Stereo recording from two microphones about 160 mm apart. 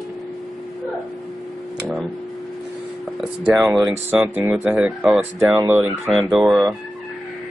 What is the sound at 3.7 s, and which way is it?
Speech, 5° right (ahead or behind).